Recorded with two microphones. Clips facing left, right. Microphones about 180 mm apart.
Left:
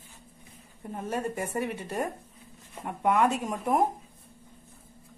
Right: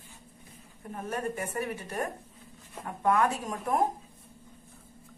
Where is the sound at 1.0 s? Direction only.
25° left (ahead or behind).